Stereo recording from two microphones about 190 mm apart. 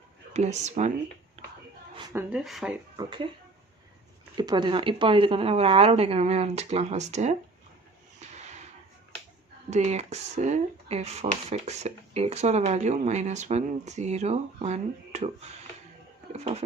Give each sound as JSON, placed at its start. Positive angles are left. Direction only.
{"t": 0.3, "sound": "speech", "side_deg": -35}
{"t": 1.4, "sound": "a sound", "side_deg": -35}
{"t": 2.1, "sound": "speech", "side_deg": -5}
{"t": 3.0, "sound": "speech", "side_deg": -25}
{"t": 4.4, "sound": "speech", "side_deg": -20}
{"t": 8.2, "sound": "a sound", "side_deg": -35}
{"t": 9.6, "sound": "speech", "side_deg": -35}